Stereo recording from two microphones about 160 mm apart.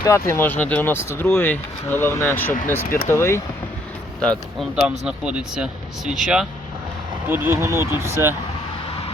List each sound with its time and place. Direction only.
0.0 s speech: 20° left (ahead or behind)
4.7 s speech: 5° right (ahead or behind)